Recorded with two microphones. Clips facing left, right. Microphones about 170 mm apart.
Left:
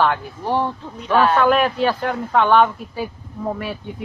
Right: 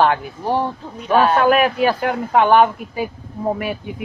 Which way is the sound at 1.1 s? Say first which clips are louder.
Right 1 dB; 15° right (ahead or behind).